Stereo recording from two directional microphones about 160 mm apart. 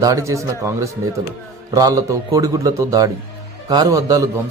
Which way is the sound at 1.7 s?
20° right (ahead or behind).